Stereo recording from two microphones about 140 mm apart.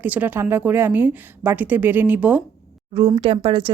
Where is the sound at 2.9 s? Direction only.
35° right (ahead or behind).